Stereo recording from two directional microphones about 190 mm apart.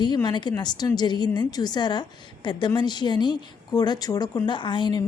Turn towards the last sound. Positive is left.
turn(degrees=25)  # may be behind; listen again after turning